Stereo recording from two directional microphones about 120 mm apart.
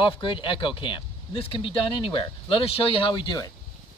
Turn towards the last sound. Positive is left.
turn(degrees=40)  # may be behind; listen again after turning